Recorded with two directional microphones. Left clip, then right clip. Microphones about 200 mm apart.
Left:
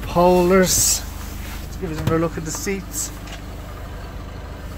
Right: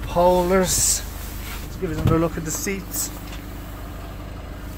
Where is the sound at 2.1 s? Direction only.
10° right (ahead or behind).